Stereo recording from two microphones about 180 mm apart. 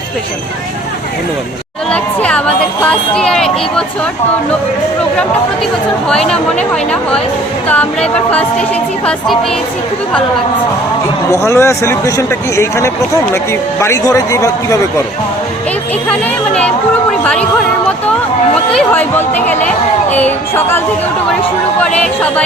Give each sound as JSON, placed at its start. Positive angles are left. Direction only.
{"t": 1.9, "sound": "a man's voice", "side_deg": 5}
{"t": 6.1, "sound": "a woman's voice", "side_deg": 5}
{"t": 11.3, "sound": "a man's voice", "side_deg": 15}
{"t": 16.0, "sound": "a woman's voice", "side_deg": 5}
{"t": 18.7, "sound": "a man's voice", "side_deg": 5}